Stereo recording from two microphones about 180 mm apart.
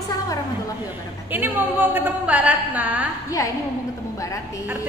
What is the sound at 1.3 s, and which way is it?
A woman's voice, 10° right (ahead or behind).